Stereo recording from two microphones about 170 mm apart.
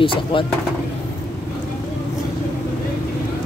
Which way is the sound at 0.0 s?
30° left (ahead or behind).